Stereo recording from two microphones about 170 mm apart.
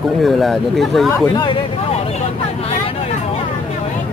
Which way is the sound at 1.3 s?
25° left (ahead or behind).